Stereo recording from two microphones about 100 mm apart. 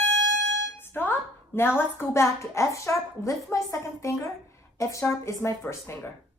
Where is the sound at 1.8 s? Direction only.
25° left (ahead or behind).